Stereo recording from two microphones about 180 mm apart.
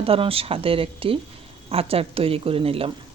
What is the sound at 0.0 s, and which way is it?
Speech, 30° right (ahead or behind).